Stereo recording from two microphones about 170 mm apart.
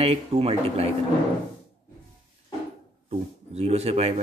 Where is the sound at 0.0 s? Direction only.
35° right (ahead or behind).